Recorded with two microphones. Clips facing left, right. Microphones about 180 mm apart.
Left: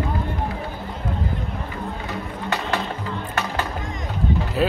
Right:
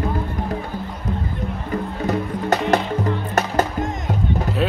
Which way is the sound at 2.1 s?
40° right (ahead or behind).